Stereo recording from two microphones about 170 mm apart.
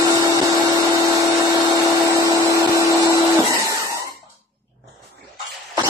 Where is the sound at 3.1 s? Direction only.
20° right (ahead or behind).